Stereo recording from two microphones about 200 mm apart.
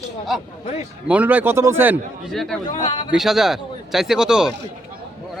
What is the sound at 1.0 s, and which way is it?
Speech, 5° right (ahead or behind).